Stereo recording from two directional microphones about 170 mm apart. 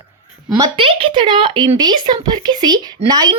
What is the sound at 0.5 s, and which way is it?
A woman's voice, 25° right (ahead or behind).